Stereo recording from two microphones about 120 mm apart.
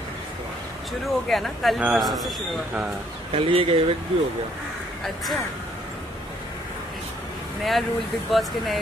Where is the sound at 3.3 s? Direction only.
50° right (ahead or behind).